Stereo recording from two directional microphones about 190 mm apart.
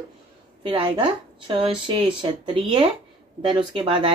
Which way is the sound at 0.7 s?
25° right (ahead or behind).